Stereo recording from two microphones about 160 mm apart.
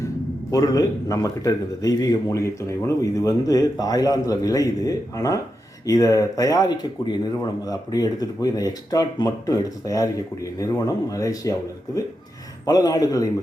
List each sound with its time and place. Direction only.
0.5 s a man's voice: 20° left (ahead or behind)
12.6 s a man's voice: 25° left (ahead or behind)